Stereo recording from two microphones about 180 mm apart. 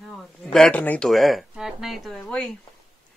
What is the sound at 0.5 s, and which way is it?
Speech, 5° left (ahead or behind).